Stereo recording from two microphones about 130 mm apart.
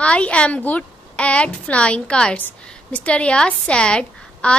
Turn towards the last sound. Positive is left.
turn(degrees=10)  # may be behind; listen again after turning